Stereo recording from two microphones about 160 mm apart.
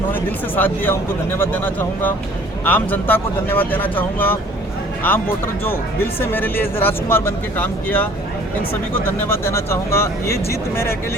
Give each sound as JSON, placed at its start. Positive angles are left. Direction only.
{"t": 0.1, "sound": "speech", "side_deg": 10}